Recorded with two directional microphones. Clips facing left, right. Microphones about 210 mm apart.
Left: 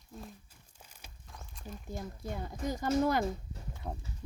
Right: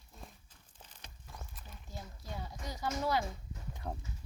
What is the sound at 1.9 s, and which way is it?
Speech, 50° left (ahead or behind).